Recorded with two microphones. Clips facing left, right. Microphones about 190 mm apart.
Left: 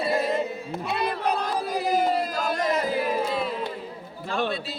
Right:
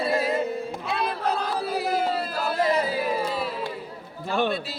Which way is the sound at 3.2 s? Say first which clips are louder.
Left 1 dB; 5° right (ahead or behind).